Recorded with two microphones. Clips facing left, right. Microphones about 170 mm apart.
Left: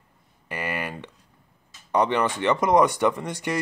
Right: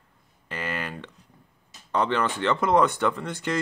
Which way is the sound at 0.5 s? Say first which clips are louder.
Left 2 dB; 15° left (ahead or behind).